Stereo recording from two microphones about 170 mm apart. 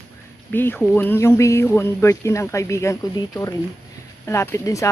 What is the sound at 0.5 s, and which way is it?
Speech, 10° left (ahead or behind).